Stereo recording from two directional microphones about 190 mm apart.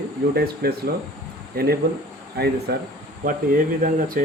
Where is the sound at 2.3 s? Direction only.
60° right (ahead or behind).